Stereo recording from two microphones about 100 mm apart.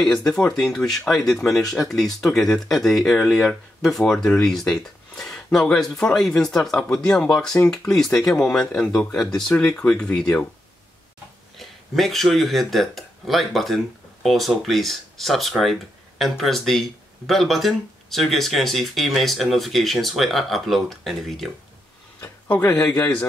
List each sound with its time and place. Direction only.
0.0 s speech: 5° left (ahead or behind)
11.5 s speech: centre (ahead or behind)
22.2 s a sound: 20° left (ahead or behind)